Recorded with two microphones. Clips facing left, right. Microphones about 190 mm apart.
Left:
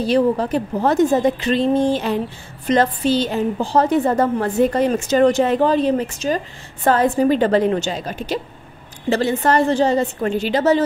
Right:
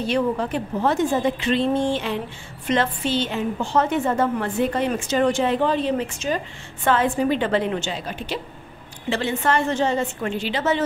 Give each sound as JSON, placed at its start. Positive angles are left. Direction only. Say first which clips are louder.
{"t": 0.0, "sound": "speech", "louder": "left 5 dB", "side_deg": 35}